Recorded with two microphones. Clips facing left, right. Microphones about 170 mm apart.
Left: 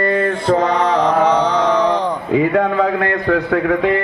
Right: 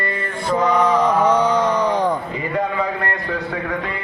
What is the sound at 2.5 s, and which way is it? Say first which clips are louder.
A man's voice: left 6 dB; 65° left (ahead or behind).